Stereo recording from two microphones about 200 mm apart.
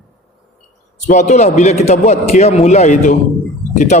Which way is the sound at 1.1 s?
35° left (ahead or behind).